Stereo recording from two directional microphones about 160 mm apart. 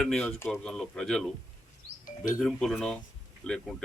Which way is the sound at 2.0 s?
60° left (ahead or behind).